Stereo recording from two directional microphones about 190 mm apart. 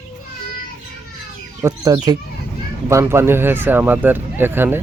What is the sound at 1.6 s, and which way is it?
Speech, 20° right (ahead or behind).